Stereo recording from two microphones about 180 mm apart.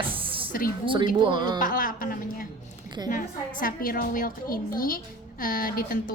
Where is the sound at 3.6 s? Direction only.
50° left (ahead or behind).